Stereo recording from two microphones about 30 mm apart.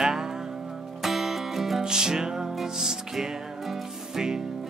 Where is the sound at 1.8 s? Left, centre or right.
Right.